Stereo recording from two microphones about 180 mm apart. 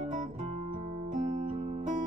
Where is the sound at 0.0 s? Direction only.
45° right (ahead or behind).